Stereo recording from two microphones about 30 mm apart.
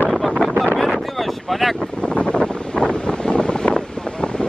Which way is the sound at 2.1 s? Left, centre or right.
Left.